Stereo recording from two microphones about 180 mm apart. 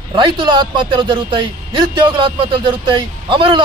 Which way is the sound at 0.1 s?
25° right (ahead or behind).